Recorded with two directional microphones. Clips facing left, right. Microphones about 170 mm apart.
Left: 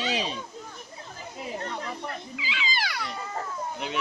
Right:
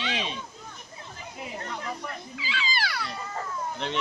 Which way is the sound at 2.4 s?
15° left (ahead or behind).